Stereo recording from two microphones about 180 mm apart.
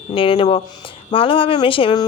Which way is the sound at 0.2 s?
30° left (ahead or behind).